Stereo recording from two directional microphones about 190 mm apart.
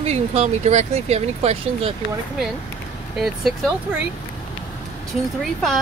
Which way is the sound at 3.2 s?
Centre (ahead or behind).